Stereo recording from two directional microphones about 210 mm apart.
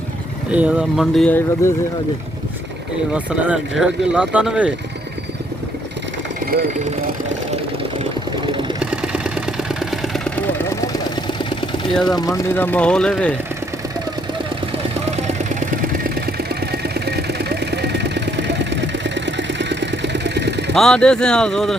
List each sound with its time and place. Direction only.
0.5 s speech: 5° right (ahead or behind)
3.1 s speech: 5° right (ahead or behind)
6.4 s vehicle: 45° right (ahead or behind)
8.8 s vehicle: 5° right (ahead or behind); by 10.8 s 10° left (ahead or behind)
12.0 s speech: 20° left (ahead or behind)
15.1 s vehicle: 35° right (ahead or behind)
16.2 s vehicle: 50° right (ahead or behind)
20.7 s speech: 5° left (ahead or behind)